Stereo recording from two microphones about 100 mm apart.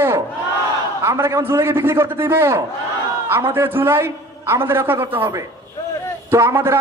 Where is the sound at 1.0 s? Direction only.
30° right (ahead or behind).